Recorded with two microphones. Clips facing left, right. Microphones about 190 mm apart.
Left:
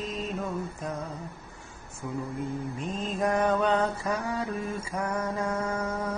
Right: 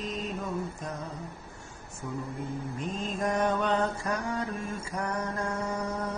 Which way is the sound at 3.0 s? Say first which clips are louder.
Left 2 dB; centre (ahead or behind).